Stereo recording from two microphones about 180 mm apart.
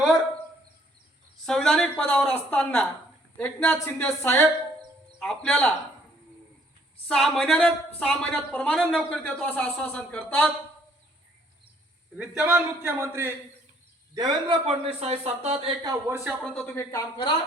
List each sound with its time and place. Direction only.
1.5 s speech: centre (ahead or behind)
5.2 s speech: centre (ahead or behind)
7.1 s speech: centre (ahead or behind)
12.1 s a man's voice: 5° right (ahead or behind); by 15.7 s 35° right (ahead or behind)
15.8 s a man's voice: 20° right (ahead or behind)
16.4 s speech: 5° left (ahead or behind)